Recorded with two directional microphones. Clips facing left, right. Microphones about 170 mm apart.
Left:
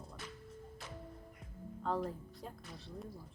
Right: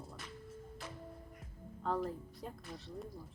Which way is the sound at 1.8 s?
Centre (ahead or behind).